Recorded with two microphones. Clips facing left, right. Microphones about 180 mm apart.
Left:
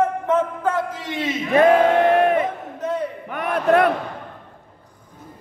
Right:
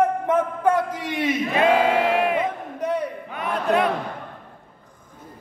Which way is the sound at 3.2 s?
55° left (ahead or behind).